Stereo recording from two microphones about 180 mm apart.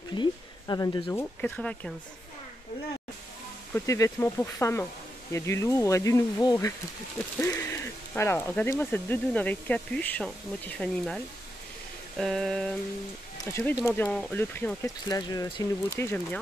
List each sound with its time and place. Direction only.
0.1 s speech: 25° left (ahead or behind)
1.4 s speech: 5° left (ahead or behind)
3.7 s speech: 15° left (ahead or behind)
7.3 s a sound: 15° left (ahead or behind)
8.1 s speech: 15° left (ahead or behind)
12.2 s a sound: centre (ahead or behind)
13.4 s speech: 15° left (ahead or behind)